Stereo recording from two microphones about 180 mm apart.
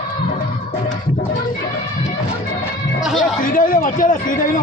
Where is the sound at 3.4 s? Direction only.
50° left (ahead or behind).